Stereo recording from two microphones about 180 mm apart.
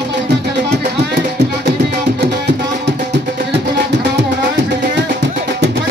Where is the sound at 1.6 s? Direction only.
70° right (ahead or behind).